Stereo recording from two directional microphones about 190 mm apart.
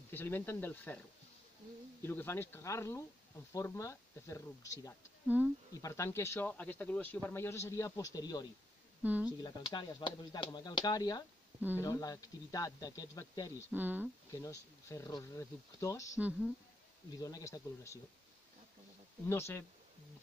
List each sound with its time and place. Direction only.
0.1 s speech: 10° left (ahead or behind)
2.0 s speech: 10° left (ahead or behind)
9.0 s speech: 10° right (ahead or behind)
9.4 s speech: 25° left (ahead or behind)
13.7 s speech: 10° right (ahead or behind)
14.3 s speech: 15° left (ahead or behind)
16.2 s speech: 10° right (ahead or behind)
17.1 s speech: 20° left (ahead or behind)
19.2 s speech: 15° left (ahead or behind)